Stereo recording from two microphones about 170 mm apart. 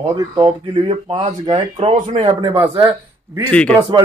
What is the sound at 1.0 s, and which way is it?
Speech, 30° right (ahead or behind).